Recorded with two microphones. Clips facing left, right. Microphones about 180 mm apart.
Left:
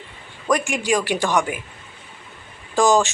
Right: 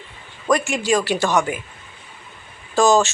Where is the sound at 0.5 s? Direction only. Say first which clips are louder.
Right 2 dB; 15° left (ahead or behind).